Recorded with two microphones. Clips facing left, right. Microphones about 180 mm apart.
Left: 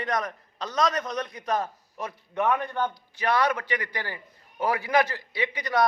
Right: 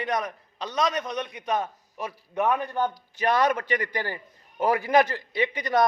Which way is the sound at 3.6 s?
45° right (ahead or behind).